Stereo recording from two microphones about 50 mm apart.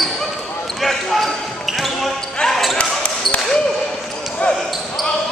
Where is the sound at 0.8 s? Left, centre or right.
Centre.